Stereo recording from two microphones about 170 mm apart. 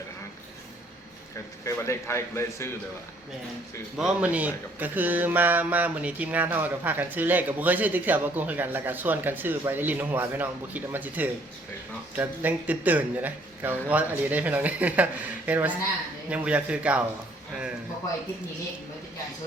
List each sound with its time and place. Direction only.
1.6 s speech: 15° left (ahead or behind)
3.9 s speech: 5° right (ahead or behind)